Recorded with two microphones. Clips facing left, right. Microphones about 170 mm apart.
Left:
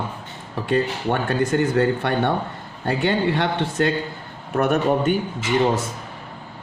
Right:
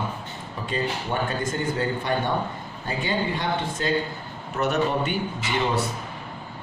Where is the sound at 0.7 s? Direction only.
65° left (ahead or behind).